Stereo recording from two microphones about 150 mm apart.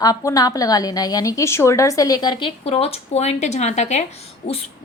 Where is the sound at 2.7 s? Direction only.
40° left (ahead or behind).